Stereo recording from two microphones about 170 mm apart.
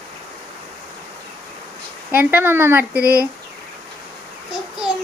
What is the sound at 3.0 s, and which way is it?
Speech, 65° right (ahead or behind).